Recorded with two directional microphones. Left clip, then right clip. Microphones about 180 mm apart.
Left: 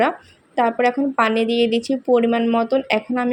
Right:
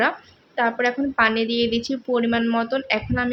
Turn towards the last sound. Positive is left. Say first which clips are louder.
# left 3 dB
turn(degrees=15)  # may be behind; listen again after turning